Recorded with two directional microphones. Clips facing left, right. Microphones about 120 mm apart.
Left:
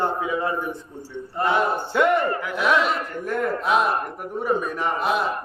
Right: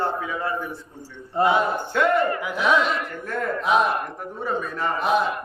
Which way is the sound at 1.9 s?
15° left (ahead or behind).